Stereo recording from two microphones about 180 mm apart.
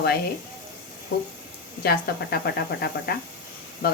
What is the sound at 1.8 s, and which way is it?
Speech, 65° left (ahead or behind).